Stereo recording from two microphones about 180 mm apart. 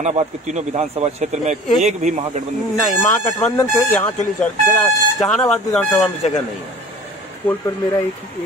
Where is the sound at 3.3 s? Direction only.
10° left (ahead or behind).